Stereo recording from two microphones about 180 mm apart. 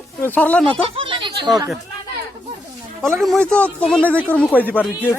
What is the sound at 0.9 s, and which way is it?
Speech, 25° right (ahead or behind).